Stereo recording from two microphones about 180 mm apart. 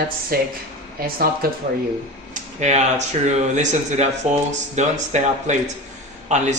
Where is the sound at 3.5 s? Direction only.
40° right (ahead or behind).